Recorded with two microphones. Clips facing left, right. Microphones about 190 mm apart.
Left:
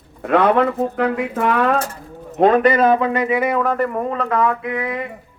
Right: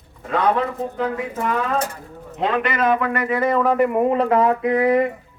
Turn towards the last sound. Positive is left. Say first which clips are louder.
# right 7 dB
turn(degrees=-40)  # may be behind; listen again after turning